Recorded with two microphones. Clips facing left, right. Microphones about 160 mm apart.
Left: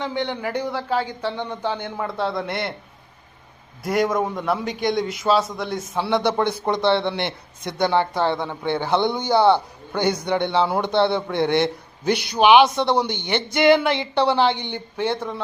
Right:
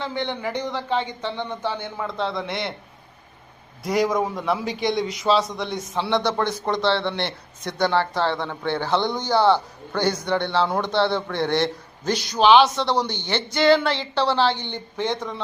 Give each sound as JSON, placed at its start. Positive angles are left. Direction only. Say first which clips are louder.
{"t": 0.0, "sound": "a man's voice", "louder": "left 2 dB", "side_deg": 15}
{"t": 3.8, "sound": "a man's voice", "louder": "left 1 dB", "side_deg": 0}